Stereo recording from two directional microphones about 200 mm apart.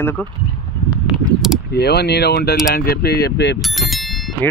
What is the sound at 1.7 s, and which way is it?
Speech, 55° left (ahead or behind).